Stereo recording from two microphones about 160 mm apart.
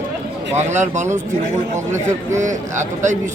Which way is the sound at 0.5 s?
50° right (ahead or behind).